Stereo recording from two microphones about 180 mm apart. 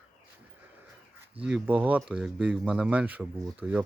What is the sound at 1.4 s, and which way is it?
Speech, 10° right (ahead or behind).